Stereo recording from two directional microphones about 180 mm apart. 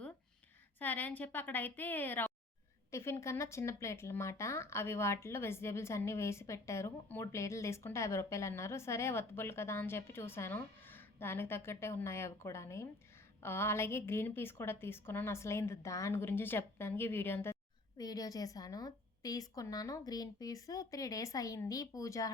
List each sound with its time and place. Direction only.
0.8 s a woman's voice: 10° left (ahead or behind)